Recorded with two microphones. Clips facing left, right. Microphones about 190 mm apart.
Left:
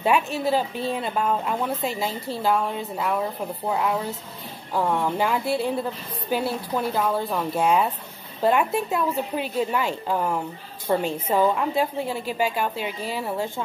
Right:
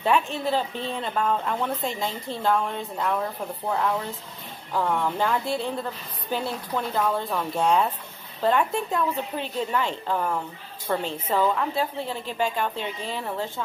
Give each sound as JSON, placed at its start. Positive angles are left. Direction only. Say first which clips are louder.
{"t": 0.0, "sound": "a woman's voice", "louder": "left 2 dB", "side_deg": 10}